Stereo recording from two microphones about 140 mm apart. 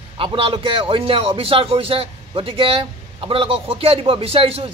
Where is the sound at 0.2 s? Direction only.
40° right (ahead or behind).